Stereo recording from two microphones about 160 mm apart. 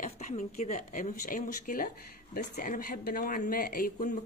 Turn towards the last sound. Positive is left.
turn(degrees=65)  # may be behind; listen again after turning